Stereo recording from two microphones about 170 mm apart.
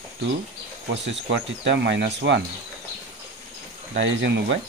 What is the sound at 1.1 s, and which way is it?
Speech, 90° right.